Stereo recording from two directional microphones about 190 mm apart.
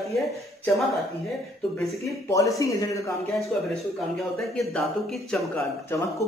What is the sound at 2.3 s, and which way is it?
Speech, 15° left (ahead or behind).